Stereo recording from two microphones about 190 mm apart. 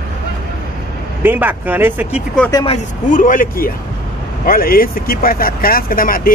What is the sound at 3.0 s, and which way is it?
Speech, 45° left (ahead or behind).